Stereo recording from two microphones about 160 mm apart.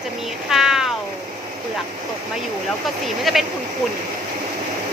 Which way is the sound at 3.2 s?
Centre (ahead or behind).